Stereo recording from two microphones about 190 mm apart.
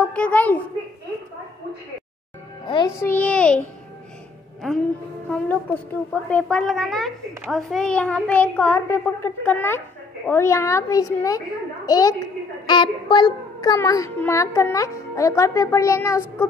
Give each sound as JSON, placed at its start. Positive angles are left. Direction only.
{"t": 0.0, "sound": "a child's voice", "side_deg": 5}
{"t": 2.6, "sound": "a child's voice", "side_deg": 25}
{"t": 3.0, "sound": "a child's voice", "side_deg": 10}
{"t": 5.3, "sound": "a woman's voice", "side_deg": 10}